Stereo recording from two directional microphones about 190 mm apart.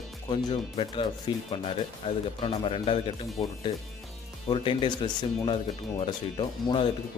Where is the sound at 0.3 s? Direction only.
25° left (ahead or behind).